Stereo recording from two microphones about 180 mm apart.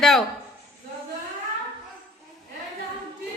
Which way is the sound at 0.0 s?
Centre (ahead or behind).